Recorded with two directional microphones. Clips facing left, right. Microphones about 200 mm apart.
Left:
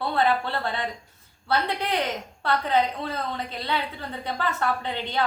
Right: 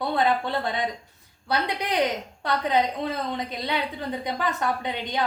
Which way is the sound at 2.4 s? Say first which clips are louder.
Even; 15° right (ahead or behind).